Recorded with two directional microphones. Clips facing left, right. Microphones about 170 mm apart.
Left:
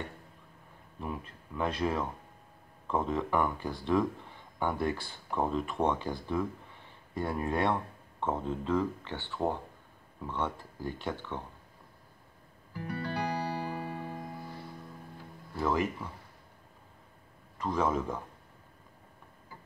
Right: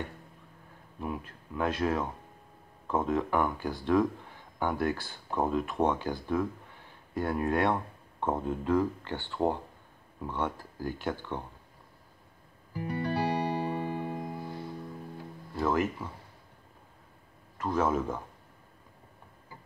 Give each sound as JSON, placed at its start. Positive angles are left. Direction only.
{"t": 1.0, "sound": "speech", "side_deg": -5}
{"t": 12.7, "sound": "music", "side_deg": -20}
{"t": 15.5, "sound": "speech", "side_deg": 0}
{"t": 17.6, "sound": "speech", "side_deg": -5}